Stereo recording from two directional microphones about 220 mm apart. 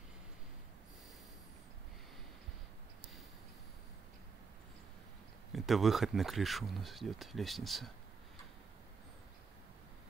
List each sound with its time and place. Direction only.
5.5 s speech: centre (ahead or behind)